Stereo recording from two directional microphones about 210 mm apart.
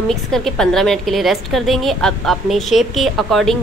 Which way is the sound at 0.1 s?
Centre (ahead or behind).